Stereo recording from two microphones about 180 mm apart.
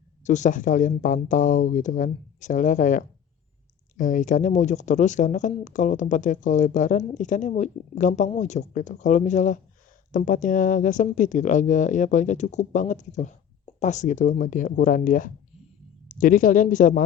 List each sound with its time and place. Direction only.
0.3 s speech: 45° left (ahead or behind)